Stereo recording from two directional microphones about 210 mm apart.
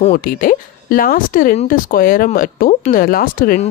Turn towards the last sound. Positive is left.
turn(degrees=40)  # may be behind; listen again after turning